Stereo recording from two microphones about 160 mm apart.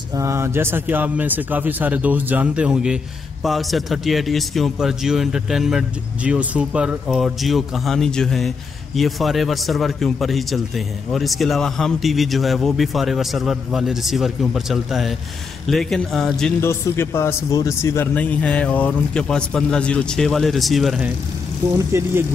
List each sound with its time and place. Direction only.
0.1 s a man's voice: 20° right (ahead or behind); by 16.5 s 5° left (ahead or behind)
16.6 s speech: 15° left (ahead or behind); by 21.1 s centre (ahead or behind)
21.7 s speech: 15° right (ahead or behind)